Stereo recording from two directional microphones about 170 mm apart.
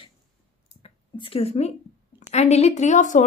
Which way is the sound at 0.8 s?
35° left (ahead or behind).